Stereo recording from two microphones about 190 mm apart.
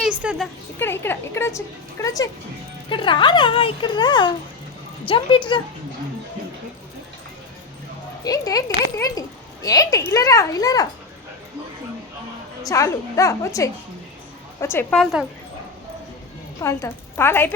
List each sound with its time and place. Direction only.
0.0 s a sound: 5° right (ahead or behind)
0.8 s a woman's voice: 10° left (ahead or behind); by 5.4 s 25° left (ahead or behind)
8.2 s a woman's voice: 20° left (ahead or behind)
12.6 s a woman's voice: 15° left (ahead or behind)
16.6 s a woman's voice: 15° left (ahead or behind)